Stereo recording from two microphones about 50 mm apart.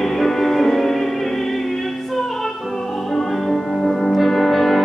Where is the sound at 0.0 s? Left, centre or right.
Centre.